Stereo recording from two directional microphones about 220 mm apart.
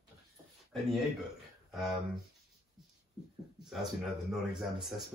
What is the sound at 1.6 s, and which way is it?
Speech, centre (ahead or behind).